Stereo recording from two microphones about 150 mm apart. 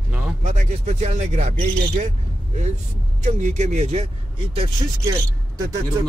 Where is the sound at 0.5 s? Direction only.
55° right (ahead or behind).